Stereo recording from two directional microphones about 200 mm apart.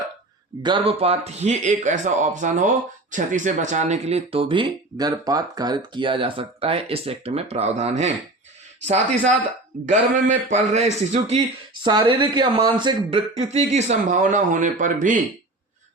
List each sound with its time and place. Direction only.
0.6 s speech: 25° right (ahead or behind)
9.8 s speech: 35° right (ahead or behind)